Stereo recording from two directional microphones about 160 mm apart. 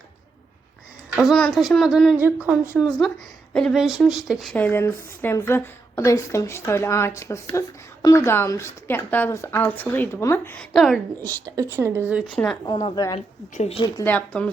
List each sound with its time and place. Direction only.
1.1 s a woman's voice: centre (ahead or behind)
11.5 s a woman's voice: 15° right (ahead or behind)
12.6 s a woman's voice: 30° left (ahead or behind)
13.1 s a woman's voice: 40° left (ahead or behind)
14.0 s speech: 10° left (ahead or behind)